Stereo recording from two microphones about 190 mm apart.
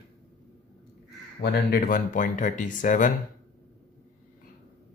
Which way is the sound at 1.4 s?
50° left (ahead or behind).